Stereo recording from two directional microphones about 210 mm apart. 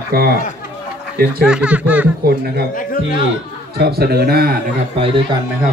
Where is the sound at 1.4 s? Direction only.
5° right (ahead or behind).